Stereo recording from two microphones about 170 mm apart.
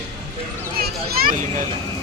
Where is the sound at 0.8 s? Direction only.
60° right (ahead or behind).